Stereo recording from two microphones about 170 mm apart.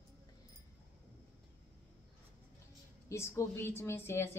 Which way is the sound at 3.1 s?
15° left (ahead or behind).